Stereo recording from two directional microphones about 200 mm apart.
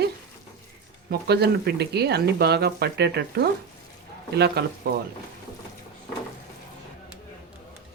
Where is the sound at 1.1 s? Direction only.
55° right (ahead or behind).